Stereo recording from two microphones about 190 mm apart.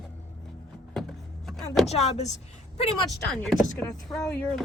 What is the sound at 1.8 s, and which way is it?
Speech, 35° left (ahead or behind).